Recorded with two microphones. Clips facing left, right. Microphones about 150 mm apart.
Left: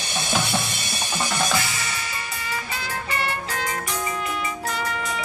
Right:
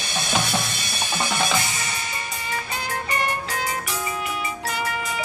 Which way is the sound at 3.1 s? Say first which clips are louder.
Right 1 dB; 15° right (ahead or behind).